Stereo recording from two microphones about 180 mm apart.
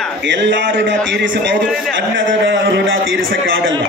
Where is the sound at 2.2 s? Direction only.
90° right.